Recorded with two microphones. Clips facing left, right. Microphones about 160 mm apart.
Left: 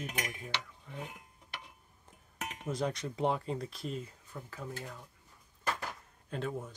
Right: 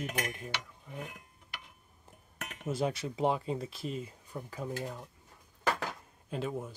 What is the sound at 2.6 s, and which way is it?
Speech, 5° right (ahead or behind).